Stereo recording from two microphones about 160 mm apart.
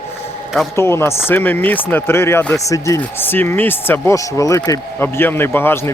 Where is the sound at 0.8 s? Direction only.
15° left (ahead or behind).